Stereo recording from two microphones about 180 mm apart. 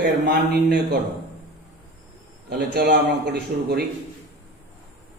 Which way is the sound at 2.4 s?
60° right (ahead or behind).